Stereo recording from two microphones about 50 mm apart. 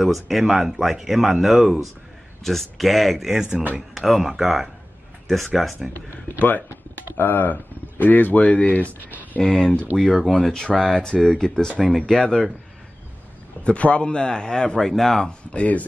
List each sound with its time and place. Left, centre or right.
0.0 s speech: centre
3.3 s speech: centre
5.8 s speech: centre
6.4 s speech: left
8.5 s speech: left
9.4 s a man's voice: centre
10.1 s speech: centre
10.5 s a man's voice: centre
13.7 s a man's voice: left; by 15.2 s centre
15.2 s speech: left